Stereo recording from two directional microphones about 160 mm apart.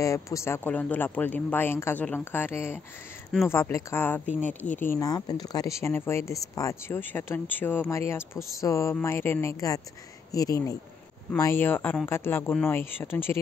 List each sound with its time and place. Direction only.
0.0 s speech: 20° left (ahead or behind)